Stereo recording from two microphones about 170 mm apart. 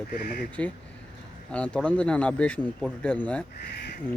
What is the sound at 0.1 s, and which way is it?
Speech, 55° left (ahead or behind).